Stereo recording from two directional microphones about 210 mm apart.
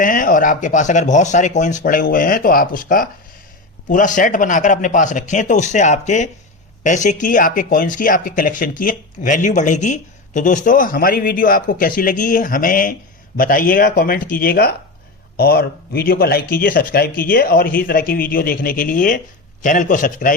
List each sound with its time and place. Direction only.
0.0 s speech: 40° left (ahead or behind)